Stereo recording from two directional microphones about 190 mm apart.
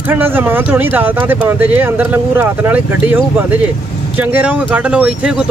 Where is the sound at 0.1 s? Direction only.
10° right (ahead or behind).